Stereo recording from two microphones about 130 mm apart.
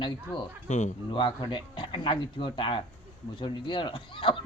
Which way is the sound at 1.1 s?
40° left (ahead or behind).